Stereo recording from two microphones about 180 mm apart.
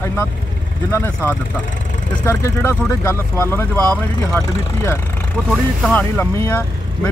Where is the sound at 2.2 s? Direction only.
15° left (ahead or behind).